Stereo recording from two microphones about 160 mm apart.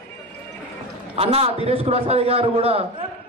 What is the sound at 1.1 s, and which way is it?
A man's voice, 35° right (ahead or behind).